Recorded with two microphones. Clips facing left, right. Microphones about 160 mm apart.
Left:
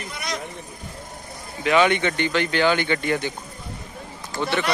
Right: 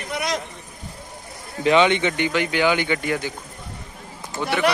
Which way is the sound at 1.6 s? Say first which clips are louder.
Right 2 dB; 20° right (ahead or behind).